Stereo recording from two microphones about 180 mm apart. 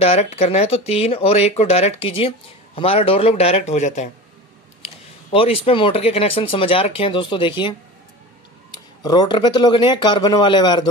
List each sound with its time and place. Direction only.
0.0 s speech: 35° left (ahead or behind)
8.7 s speech: 25° left (ahead or behind)